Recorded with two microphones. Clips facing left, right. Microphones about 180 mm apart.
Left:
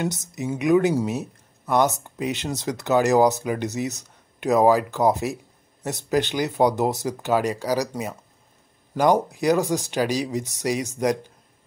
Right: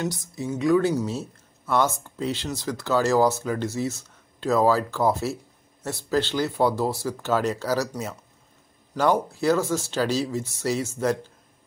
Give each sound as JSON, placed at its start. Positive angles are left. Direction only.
{"t": 0.0, "sound": "speech", "side_deg": 20}